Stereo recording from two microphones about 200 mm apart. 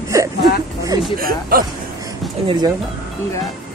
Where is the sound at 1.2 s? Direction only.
45° right (ahead or behind).